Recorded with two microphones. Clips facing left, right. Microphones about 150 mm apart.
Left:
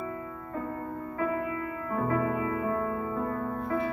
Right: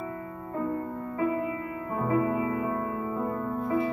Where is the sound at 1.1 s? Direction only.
20° right (ahead or behind).